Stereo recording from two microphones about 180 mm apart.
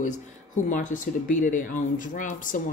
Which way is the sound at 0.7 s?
45° left (ahead or behind).